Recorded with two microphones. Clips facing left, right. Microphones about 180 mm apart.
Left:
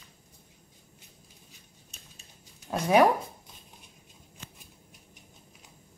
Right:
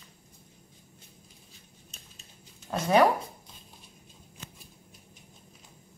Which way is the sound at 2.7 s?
5° left (ahead or behind).